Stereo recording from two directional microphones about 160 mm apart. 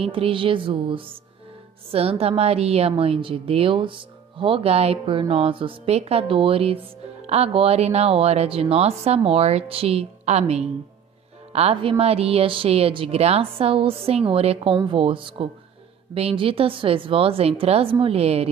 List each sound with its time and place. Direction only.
0.0 s speech: 35° right (ahead or behind)